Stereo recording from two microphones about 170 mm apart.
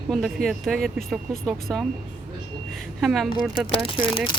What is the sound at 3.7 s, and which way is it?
Speech, 30° left (ahead or behind).